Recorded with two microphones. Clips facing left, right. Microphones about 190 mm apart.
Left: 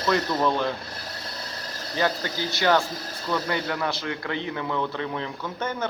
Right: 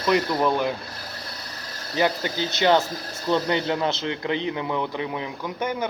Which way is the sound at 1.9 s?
15° right (ahead or behind).